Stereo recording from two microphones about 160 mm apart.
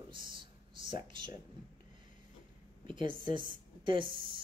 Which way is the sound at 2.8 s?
30° right (ahead or behind).